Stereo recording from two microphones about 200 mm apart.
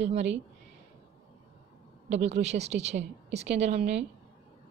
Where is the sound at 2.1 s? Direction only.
35° right (ahead or behind).